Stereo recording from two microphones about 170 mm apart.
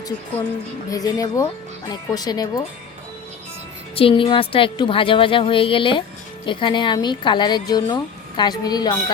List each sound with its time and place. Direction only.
0.9 s speech: 20° left (ahead or behind)
3.9 s a woman's voice: 30° left (ahead or behind)